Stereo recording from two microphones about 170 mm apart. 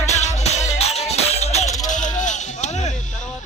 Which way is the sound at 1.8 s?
45° left (ahead or behind).